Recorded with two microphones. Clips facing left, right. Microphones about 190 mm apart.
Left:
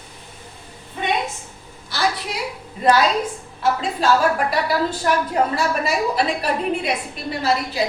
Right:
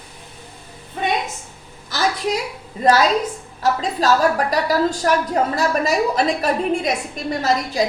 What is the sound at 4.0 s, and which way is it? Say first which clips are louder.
A woman's voice: right 1 dB; 40° right (ahead or behind).